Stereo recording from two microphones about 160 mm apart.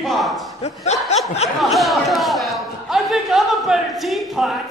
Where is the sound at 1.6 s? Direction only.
Centre (ahead or behind).